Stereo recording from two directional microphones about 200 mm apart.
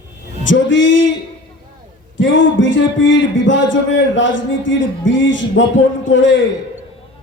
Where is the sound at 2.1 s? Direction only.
70° left (ahead or behind).